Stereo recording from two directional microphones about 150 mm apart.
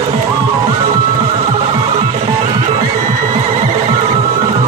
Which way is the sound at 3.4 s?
45° right (ahead or behind).